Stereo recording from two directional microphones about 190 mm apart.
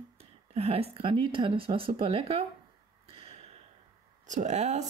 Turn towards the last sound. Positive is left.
turn(degrees=-35)  # may be behind; listen again after turning